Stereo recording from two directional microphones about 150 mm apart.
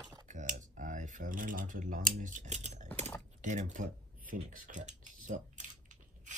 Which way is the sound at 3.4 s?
55° right (ahead or behind).